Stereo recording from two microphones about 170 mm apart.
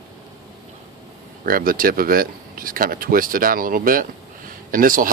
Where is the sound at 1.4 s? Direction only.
55° right (ahead or behind).